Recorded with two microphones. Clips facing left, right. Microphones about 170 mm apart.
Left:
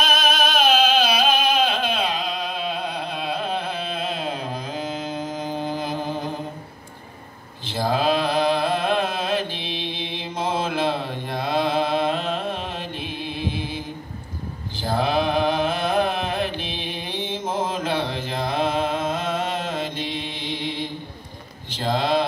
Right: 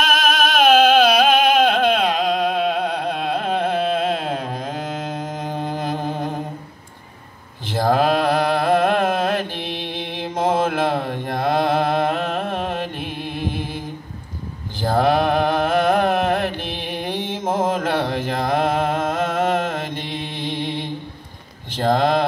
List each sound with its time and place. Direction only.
0.6 s carnatic music: 55° right (ahead or behind)
7.7 s mantra: 50° right (ahead or behind)
14.8 s music: 50° right (ahead or behind)
17.5 s mantra: 50° right (ahead or behind)
21.7 s a sound: 50° right (ahead or behind)